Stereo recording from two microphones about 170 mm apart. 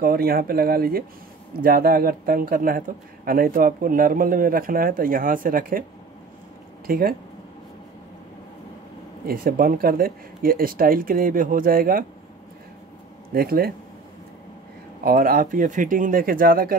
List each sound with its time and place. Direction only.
0.0 s speech: 60° right (ahead or behind)
6.9 s speech: 60° right (ahead or behind)
9.3 s speech: 60° right (ahead or behind)
13.3 s speech: 60° right (ahead or behind)
15.0 s speech: 60° right (ahead or behind)